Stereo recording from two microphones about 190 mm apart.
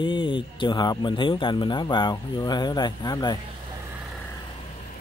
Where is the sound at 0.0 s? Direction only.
25° left (ahead or behind).